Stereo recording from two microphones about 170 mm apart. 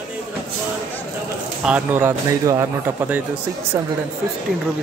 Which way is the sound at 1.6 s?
10° right (ahead or behind).